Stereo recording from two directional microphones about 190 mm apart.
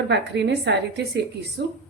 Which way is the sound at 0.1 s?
65° right (ahead or behind).